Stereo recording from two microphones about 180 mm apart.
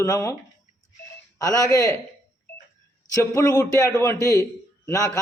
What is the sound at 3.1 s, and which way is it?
A man's voice, 20° left (ahead or behind).